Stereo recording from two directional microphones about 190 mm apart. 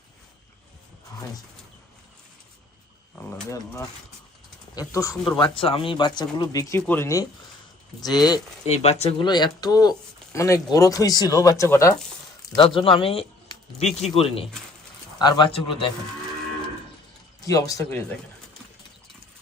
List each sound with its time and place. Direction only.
3.2 s speech: 10° left (ahead or behind)
5.4 s speech: 30° left (ahead or behind)
8.6 s speech: 35° left (ahead or behind); by 11.9 s 15° left (ahead or behind)
12.5 s speech: 25° left (ahead or behind)
17.4 s speech: 15° left (ahead or behind)